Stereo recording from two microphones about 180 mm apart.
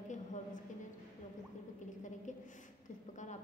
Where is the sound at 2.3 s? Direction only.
45° left (ahead or behind).